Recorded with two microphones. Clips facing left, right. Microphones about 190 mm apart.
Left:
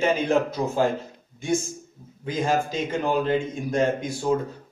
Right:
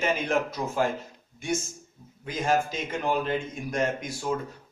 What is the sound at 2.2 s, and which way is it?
A man's voice, 30° left (ahead or behind).